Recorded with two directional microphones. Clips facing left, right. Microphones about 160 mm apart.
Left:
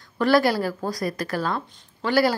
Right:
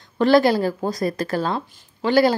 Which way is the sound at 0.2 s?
25° right (ahead or behind).